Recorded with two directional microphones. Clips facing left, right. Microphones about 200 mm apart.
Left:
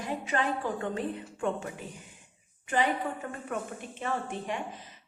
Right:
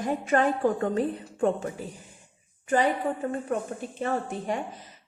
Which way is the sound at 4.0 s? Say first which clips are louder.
Right 4 dB; 40° right (ahead or behind).